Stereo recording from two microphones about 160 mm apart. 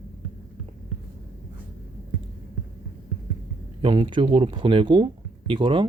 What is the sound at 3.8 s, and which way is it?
Speech, 35° right (ahead or behind).